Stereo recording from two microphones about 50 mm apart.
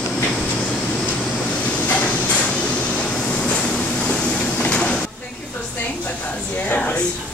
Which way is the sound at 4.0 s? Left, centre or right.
Left.